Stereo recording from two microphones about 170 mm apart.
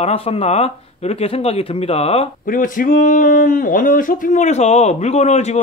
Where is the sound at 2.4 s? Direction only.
50° left (ahead or behind).